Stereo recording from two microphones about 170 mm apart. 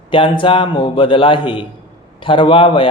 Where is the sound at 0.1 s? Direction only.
30° left (ahead or behind).